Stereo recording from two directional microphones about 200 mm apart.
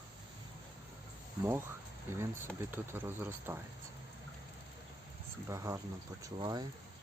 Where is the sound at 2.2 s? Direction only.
10° right (ahead or behind).